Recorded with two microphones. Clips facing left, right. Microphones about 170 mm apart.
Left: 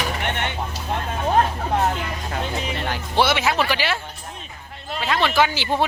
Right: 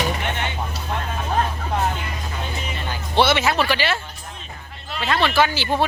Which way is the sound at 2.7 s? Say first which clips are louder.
Left 3 dB; 70° left (ahead or behind).